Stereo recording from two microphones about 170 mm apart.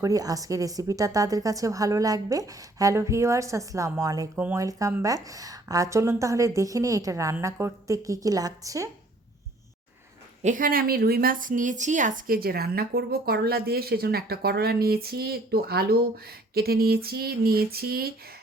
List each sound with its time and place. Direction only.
0.0 s a woman's voice: 20° right (ahead or behind)
4.4 s speech: 10° right (ahead or behind)
4.6 s a woman's voice: 20° right (ahead or behind)
10.4 s a woman's voice: 50° right (ahead or behind)